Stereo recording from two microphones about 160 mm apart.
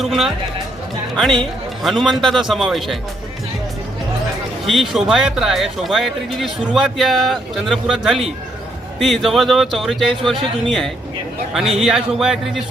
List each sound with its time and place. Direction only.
0.0 s speech: centre (ahead or behind)
4.6 s speech: centre (ahead or behind)